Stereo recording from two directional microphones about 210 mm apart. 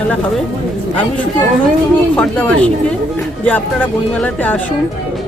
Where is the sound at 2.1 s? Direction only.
5° left (ahead or behind).